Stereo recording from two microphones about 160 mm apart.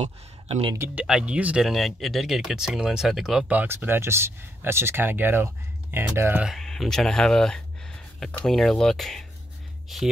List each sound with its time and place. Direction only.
0.0 s speech: 35° right (ahead or behind)
0.7 s speech: 10° right (ahead or behind)
6.5 s speech: centre (ahead or behind)